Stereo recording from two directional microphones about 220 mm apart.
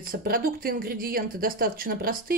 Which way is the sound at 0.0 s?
40° right (ahead or behind).